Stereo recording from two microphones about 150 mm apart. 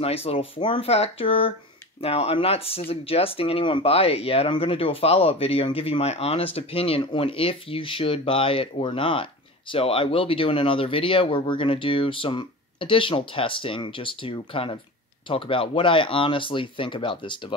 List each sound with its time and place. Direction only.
0.0 s speech: 40° left (ahead or behind)